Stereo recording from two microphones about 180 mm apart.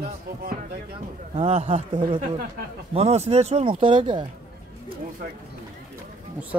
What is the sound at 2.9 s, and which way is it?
Speech, 35° right (ahead or behind).